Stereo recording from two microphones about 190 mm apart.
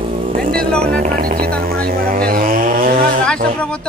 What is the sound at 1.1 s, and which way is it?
Chainsaw, 50° right (ahead or behind).